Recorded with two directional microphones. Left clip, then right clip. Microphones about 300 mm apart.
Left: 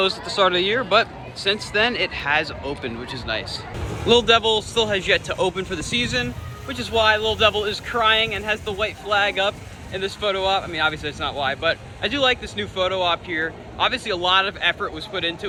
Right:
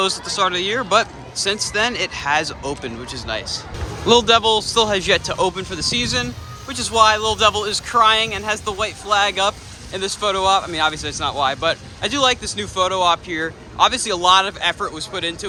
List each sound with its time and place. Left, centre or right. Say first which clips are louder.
0.3 s speech: left 1 dB; centre